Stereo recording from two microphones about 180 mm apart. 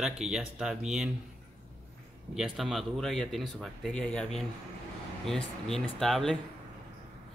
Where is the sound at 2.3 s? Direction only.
5° right (ahead or behind).